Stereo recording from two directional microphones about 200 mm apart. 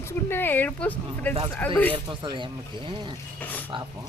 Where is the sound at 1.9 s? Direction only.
25° right (ahead or behind).